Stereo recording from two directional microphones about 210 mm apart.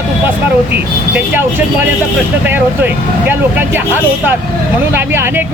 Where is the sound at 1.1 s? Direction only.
10° right (ahead or behind).